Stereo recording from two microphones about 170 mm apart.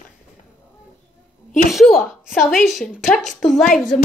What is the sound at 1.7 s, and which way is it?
A woman's voice, centre (ahead or behind).